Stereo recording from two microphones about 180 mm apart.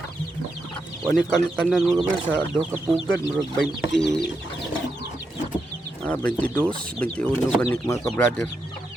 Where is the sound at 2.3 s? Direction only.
10° right (ahead or behind).